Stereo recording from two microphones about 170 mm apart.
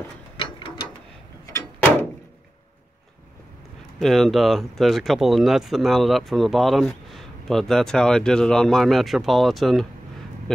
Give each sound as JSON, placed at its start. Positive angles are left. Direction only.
{"t": 0.4, "sound": "ratchet", "side_deg": 30}
{"t": 1.4, "sound": "a sound", "side_deg": 15}
{"t": 4.0, "sound": "speech", "side_deg": 0}